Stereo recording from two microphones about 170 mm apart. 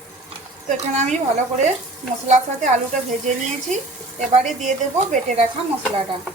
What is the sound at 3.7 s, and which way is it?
Speech, 45° right (ahead or behind).